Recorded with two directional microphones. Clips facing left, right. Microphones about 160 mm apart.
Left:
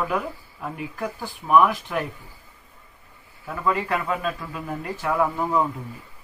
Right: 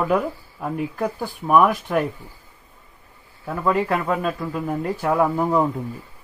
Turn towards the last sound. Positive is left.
turn(degrees=-35)  # may be behind; listen again after turning